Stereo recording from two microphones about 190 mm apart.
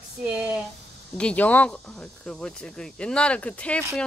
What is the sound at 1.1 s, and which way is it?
Speech, 5° left (ahead or behind).